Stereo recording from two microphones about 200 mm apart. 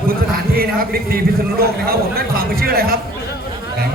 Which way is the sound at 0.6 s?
50° right (ahead or behind).